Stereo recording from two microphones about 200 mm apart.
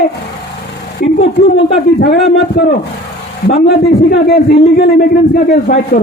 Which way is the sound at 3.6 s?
50° left (ahead or behind).